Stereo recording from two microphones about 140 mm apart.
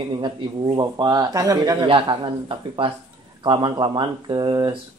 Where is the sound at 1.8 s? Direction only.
35° right (ahead or behind).